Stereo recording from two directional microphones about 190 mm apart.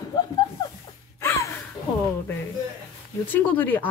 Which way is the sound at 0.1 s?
20° left (ahead or behind).